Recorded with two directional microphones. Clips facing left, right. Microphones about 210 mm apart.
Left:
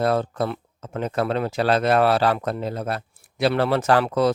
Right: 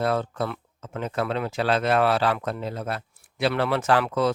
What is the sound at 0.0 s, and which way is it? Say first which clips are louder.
Speech: left 3 dB; 40° left (ahead or behind).